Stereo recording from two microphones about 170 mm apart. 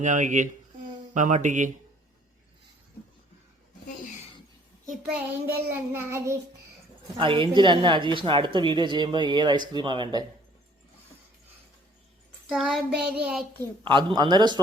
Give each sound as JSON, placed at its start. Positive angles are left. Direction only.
{"t": 0.0, "sound": "speech", "side_deg": -45}
{"t": 5.5, "sound": "child singing", "side_deg": -15}
{"t": 7.2, "sound": "speech", "side_deg": -30}
{"t": 12.5, "sound": "child singing", "side_deg": 0}
{"t": 13.6, "sound": "speech", "side_deg": -30}